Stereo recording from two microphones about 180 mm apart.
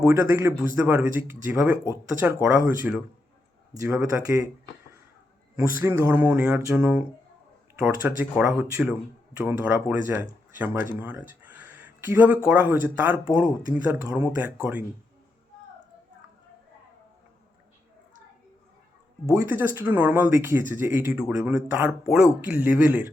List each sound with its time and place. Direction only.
0.0 s speech: 15° right (ahead or behind)
5.5 s speech: 15° right (ahead or behind)
11.0 s a sound: 10° right (ahead or behind)
12.5 s speech: 10° right (ahead or behind)
19.4 s speech: 10° right (ahead or behind)